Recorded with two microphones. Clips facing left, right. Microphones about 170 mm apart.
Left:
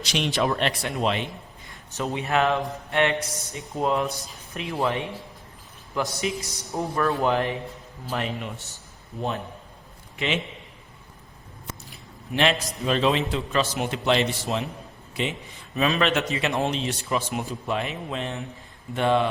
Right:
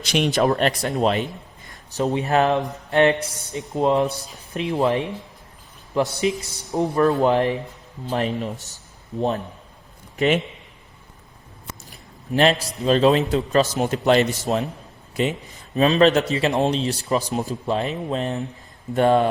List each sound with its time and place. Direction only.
0.0 s a man's voice: 50° right (ahead or behind); by 4.7 s 30° right (ahead or behind)
5.9 s a man's voice: 25° right (ahead or behind)
10.2 s speech: 50° right (ahead or behind)
12.3 s a man's voice: 35° right (ahead or behind)